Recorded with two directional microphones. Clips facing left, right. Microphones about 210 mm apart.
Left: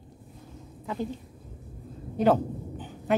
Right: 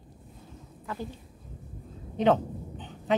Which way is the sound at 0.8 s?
15° left (ahead or behind).